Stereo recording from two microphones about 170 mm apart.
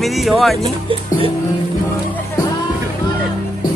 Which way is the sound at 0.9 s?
35° right (ahead or behind).